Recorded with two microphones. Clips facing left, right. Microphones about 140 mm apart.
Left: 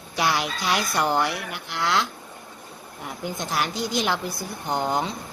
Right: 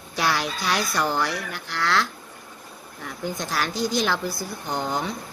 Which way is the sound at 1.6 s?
20° left (ahead or behind).